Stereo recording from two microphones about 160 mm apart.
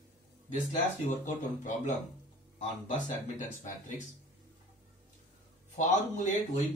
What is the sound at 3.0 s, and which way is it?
Speech, 50° left (ahead or behind).